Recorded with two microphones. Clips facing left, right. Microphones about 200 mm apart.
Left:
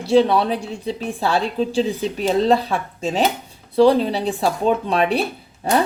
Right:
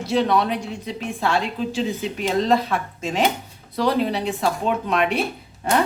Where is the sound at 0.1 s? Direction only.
30° left (ahead or behind).